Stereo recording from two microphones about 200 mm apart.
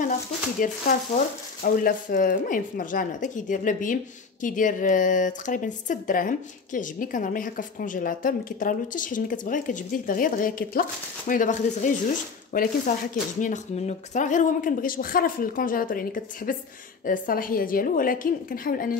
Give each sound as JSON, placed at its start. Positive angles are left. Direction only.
{"t": 0.6, "sound": "speech", "side_deg": 45}